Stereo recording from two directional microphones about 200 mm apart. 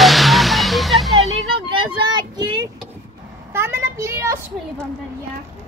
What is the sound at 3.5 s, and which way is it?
Speech, 10° right (ahead or behind).